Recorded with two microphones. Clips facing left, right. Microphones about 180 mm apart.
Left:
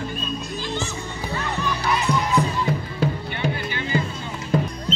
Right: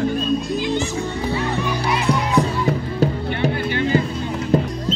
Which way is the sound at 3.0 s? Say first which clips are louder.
Right 5 dB; 40° right (ahead or behind).